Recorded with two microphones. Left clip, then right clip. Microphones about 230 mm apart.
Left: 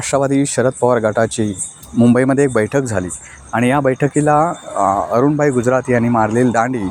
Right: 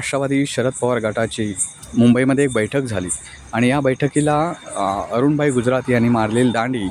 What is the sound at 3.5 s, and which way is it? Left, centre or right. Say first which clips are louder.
Speech: left 3 dB; centre.